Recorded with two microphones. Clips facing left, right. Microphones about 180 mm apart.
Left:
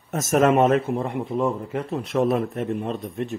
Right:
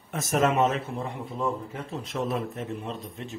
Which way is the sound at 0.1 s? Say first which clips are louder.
Left 6 dB; 45° left (ahead or behind).